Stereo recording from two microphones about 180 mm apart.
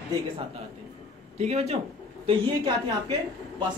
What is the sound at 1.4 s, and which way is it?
Speech, 35° right (ahead or behind).